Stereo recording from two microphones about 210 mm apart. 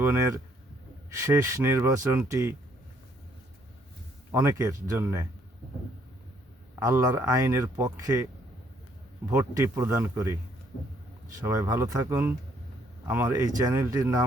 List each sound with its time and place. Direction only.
1.1 s speech: 15° right (ahead or behind)
4.3 s speech: 15° right (ahead or behind)
6.7 s speech: 15° right (ahead or behind)
9.3 s speech: 15° right (ahead or behind)
11.3 s speech: 15° right (ahead or behind)